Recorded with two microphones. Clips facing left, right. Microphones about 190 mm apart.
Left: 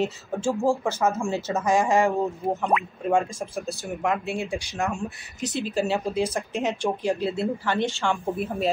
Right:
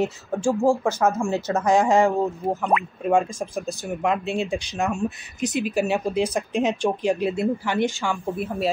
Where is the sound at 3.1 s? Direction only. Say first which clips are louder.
Right 2 dB; 20° right (ahead or behind).